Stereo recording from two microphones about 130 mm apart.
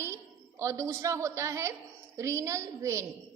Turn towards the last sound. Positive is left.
turn(degrees=-25)  # may be behind; listen again after turning